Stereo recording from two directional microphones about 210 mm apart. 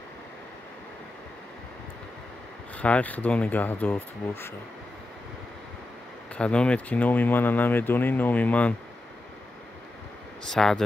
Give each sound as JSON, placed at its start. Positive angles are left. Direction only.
{"t": 2.8, "sound": "speech", "side_deg": 5}
{"t": 6.3, "sound": "speech", "side_deg": 5}
{"t": 10.5, "sound": "speech", "side_deg": 5}